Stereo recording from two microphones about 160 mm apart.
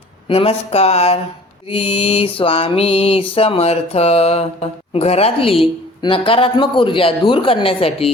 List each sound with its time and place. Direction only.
0.3 s a woman's voice: 40° left (ahead or behind)